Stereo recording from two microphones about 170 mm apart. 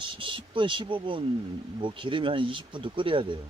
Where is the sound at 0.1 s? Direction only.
30° right (ahead or behind).